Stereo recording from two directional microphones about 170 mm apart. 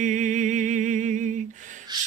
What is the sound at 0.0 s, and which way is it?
Music, 45° right (ahead or behind).